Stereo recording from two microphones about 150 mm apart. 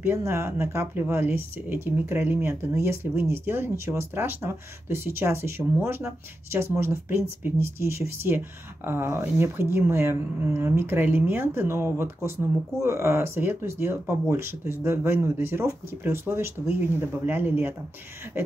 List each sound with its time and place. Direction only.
0.0 s speech: 15° right (ahead or behind)